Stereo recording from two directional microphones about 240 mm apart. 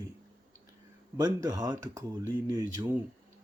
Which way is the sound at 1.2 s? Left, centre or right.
Centre.